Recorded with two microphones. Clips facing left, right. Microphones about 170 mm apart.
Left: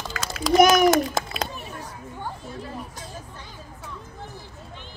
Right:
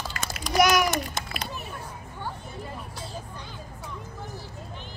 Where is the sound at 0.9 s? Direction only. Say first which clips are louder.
Left 9 dB; 90° left.